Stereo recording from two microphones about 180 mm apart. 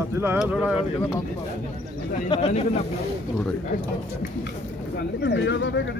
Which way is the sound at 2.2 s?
30° left (ahead or behind).